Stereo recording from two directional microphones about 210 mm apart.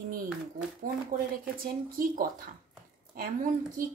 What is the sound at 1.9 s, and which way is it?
Speech, 40° right (ahead or behind).